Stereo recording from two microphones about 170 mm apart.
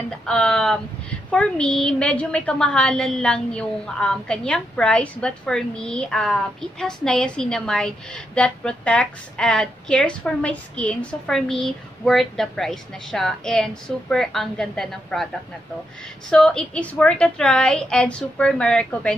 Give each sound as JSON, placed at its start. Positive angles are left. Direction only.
{"t": 0.3, "sound": "a sound", "side_deg": 5}
{"t": 1.3, "sound": "a woman's voice", "side_deg": 5}
{"t": 16.3, "sound": "a woman's voice", "side_deg": 5}